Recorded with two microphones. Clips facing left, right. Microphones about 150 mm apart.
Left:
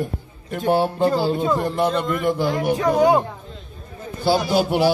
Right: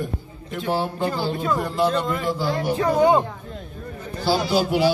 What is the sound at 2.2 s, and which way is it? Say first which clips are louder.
Speech: left 3 dB; 60° left (ahead or behind).